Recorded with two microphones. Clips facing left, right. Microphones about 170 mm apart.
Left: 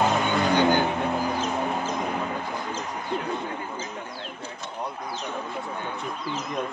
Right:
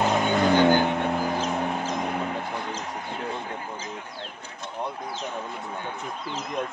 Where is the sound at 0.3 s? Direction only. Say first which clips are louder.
Right 5 dB; 45° right (ahead or behind).